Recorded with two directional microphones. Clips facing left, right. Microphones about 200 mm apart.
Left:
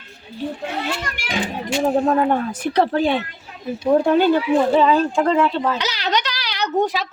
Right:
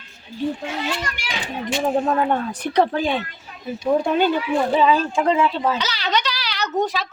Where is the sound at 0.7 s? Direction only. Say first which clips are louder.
Left 1 dB; 60° left (ahead or behind).